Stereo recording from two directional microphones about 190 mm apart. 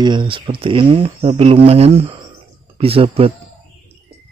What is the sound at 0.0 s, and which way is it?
Speech, 25° right (ahead or behind).